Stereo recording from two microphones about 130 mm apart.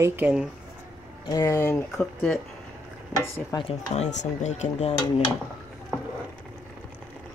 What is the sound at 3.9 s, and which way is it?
Speech, 60° left (ahead or behind).